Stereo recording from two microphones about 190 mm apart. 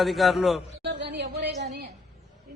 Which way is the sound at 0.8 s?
65° right (ahead or behind).